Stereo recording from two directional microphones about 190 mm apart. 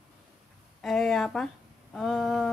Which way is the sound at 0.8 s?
Centre (ahead or behind).